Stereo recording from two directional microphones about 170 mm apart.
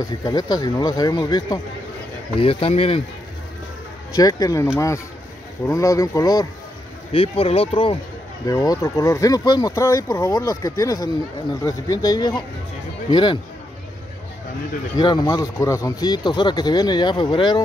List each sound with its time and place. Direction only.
0.0 s speech: 20° left (ahead or behind)
2.4 s speech: 35° left (ahead or behind)
4.1 s speech: 20° left (ahead or behind)
7.1 s speech: 35° left (ahead or behind)
8.5 s speech: 20° left (ahead or behind)
15.0 s speech: 25° left (ahead or behind)